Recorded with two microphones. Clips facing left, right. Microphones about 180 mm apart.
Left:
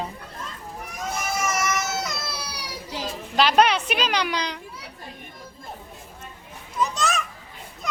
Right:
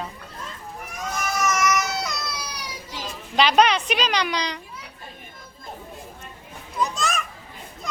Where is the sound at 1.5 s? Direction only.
30° left (ahead or behind).